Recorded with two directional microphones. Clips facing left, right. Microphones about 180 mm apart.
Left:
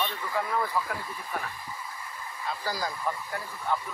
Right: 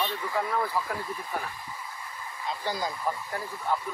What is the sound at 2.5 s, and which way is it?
Speech, 20° right (ahead or behind).